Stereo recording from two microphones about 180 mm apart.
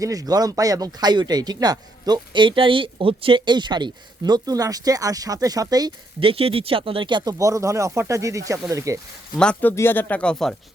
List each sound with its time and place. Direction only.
0.0 s speech: 20° right (ahead or behind)
9.4 s speech: 10° left (ahead or behind)